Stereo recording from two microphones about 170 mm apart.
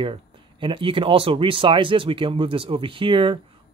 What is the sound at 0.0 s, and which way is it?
Speech, 30° right (ahead or behind).